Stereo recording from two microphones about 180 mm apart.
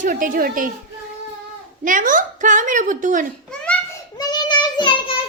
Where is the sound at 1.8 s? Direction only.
45° right (ahead or behind).